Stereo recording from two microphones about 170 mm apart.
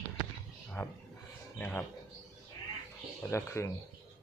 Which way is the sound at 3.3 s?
15° left (ahead or behind).